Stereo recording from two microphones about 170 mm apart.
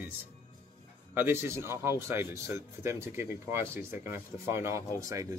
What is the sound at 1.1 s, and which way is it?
Speech, 15° right (ahead or behind).